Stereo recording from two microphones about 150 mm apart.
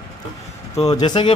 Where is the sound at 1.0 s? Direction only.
30° left (ahead or behind).